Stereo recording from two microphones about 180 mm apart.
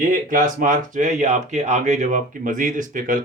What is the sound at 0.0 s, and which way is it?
Speech, 50° right (ahead or behind).